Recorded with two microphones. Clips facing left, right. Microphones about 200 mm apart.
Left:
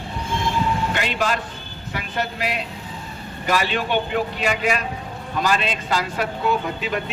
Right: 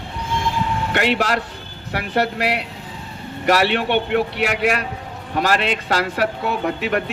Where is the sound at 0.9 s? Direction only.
70° right (ahead or behind).